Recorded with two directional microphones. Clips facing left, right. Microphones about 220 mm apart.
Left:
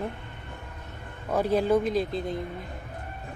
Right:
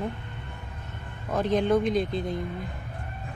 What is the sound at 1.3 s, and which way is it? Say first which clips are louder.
Speech: even; 10° left (ahead or behind).